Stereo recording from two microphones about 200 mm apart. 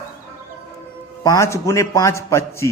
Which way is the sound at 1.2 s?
15° left (ahead or behind).